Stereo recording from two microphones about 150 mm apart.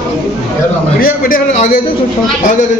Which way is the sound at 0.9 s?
70° left (ahead or behind).